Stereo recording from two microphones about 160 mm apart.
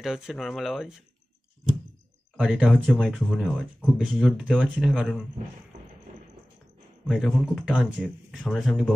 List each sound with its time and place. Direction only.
0.0 s speech: centre (ahead or behind)
2.3 s speech: 5° right (ahead or behind)
5.7 s a sound: 55° right (ahead or behind)
7.1 s speech: 5° left (ahead or behind)